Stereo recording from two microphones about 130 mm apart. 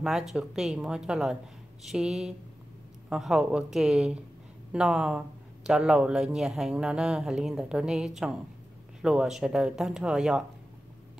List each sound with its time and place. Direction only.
0.0 s speech: centre (ahead or behind)